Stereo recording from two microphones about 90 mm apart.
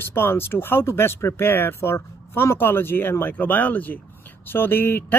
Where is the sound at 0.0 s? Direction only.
25° left (ahead or behind).